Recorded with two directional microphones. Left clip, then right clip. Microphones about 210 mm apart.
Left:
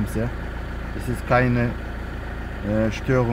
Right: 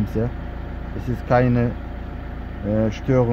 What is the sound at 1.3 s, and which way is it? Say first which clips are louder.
Speech: right 1 dB; 20° right (ahead or behind).